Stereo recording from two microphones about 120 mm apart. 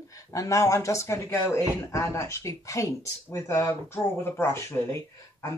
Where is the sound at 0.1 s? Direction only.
25° left (ahead or behind).